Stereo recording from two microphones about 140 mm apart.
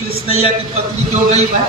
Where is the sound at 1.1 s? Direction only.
50° right (ahead or behind).